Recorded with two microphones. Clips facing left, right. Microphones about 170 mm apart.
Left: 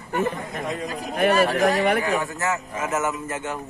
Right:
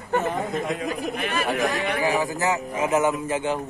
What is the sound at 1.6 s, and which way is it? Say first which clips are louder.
Speech: left 5 dB; 55° left (ahead or behind).